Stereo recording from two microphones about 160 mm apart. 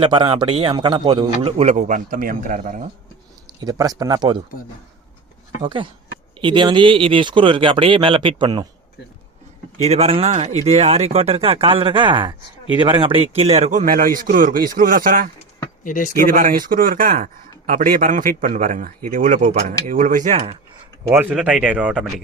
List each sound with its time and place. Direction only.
0.0 s a man's voice: 30° right (ahead or behind); by 2.8 s 55° right (ahead or behind)
3.6 s speech: 25° right (ahead or behind)
5.6 s a man's voice: 30° right (ahead or behind)
9.8 s a man's voice: 40° right (ahead or behind); by 15.3 s 60° right (ahead or behind)
15.8 s speech: 55° left (ahead or behind)
16.1 s speech: 60° right (ahead or behind)
21.1 s speech: 10° right (ahead or behind)